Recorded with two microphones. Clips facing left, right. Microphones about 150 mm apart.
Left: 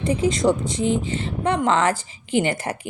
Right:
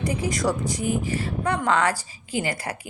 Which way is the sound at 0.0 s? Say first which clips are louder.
Left 5 dB; 25° left (ahead or behind).